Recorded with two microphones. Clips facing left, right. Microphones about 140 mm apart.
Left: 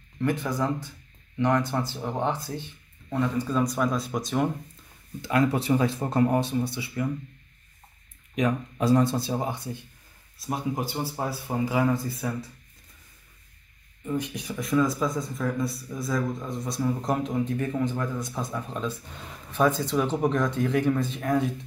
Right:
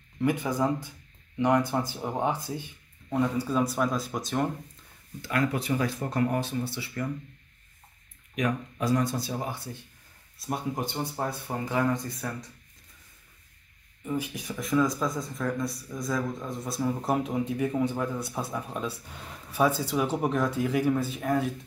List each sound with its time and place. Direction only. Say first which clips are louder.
0.2 s speech: even; 10° right (ahead or behind)
5.2 s speech: left 4 dB; 25° left (ahead or behind)
8.4 s speech: left 3 dB; 25° left (ahead or behind)
10.4 s speech: left 2 dB; centre (ahead or behind)
14.0 s speech: left 2 dB; 5° right (ahead or behind)